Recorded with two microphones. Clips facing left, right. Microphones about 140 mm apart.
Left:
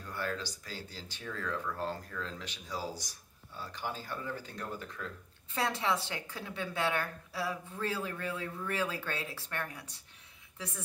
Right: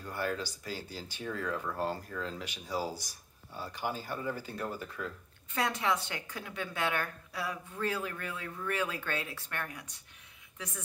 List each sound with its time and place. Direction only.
0.0 s speech: 10° right (ahead or behind)
5.5 s a woman's voice: 30° left (ahead or behind)